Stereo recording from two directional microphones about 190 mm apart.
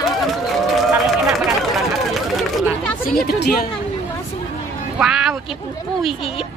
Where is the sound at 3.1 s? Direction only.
55° left (ahead or behind).